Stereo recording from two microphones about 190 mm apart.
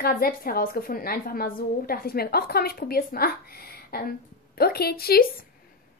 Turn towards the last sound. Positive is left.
turn(degrees=55)  # may be behind; listen again after turning